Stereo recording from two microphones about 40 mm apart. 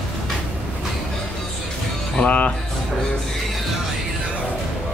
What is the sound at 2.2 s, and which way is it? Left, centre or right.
Speech, left.